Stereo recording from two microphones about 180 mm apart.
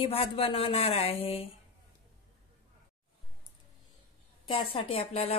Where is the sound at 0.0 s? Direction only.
30° left (ahead or behind).